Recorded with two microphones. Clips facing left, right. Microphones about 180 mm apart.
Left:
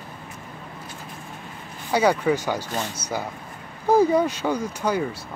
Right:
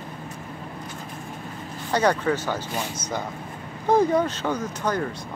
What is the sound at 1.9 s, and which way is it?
Speech, 10° left (ahead or behind).